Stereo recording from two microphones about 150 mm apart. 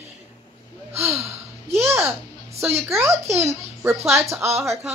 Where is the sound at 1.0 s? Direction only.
15° right (ahead or behind).